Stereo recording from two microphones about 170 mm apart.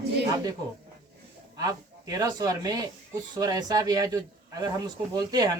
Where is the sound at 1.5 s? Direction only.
20° right (ahead or behind).